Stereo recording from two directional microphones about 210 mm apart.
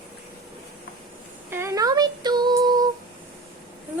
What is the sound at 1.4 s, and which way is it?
Female singing, 10° right (ahead or behind).